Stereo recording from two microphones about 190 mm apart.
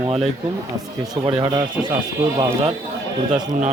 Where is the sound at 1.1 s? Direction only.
20° right (ahead or behind).